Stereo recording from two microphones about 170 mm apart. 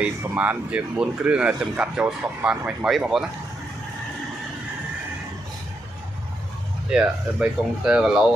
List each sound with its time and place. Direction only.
0.0 s speech: 10° right (ahead or behind)
6.9 s speech: 5° right (ahead or behind)